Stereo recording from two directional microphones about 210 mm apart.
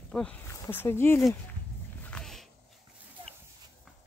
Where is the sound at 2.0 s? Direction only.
5° left (ahead or behind).